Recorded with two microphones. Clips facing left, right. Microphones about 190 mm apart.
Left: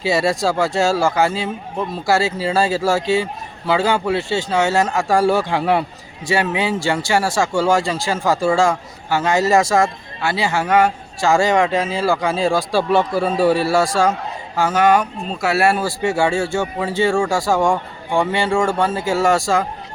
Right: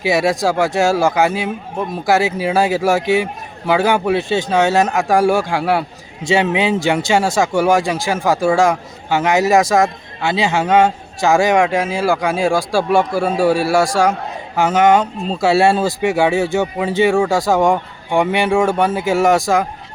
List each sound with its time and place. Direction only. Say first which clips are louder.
0.0 s speech: right 2 dB; 15° right (ahead or behind)
6.2 s speech: right 4 dB; 20° right (ahead or behind)